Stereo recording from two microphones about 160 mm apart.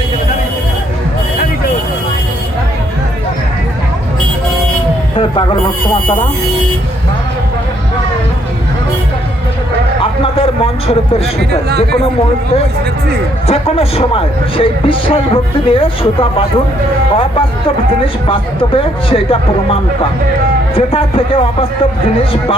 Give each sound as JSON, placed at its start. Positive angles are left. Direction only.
{"t": 5.1, "sound": "a sound", "side_deg": 30}
{"t": 10.0, "sound": "speech", "side_deg": 35}
{"t": 13.5, "sound": "speech", "side_deg": 40}
{"t": 18.0, "sound": "speech", "side_deg": 35}
{"t": 20.7, "sound": "speech", "side_deg": 35}